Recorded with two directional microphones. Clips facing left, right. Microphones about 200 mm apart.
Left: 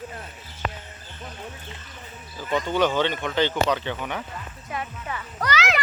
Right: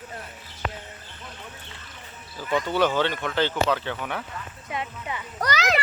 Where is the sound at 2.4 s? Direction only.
10° right (ahead or behind).